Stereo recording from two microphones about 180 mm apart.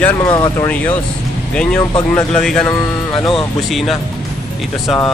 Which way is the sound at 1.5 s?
5° left (ahead or behind).